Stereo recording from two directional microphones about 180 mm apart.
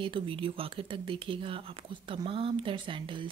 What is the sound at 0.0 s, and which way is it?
Speech, 30° right (ahead or behind).